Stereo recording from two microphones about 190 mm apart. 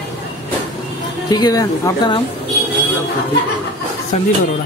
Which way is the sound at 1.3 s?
20° left (ahead or behind).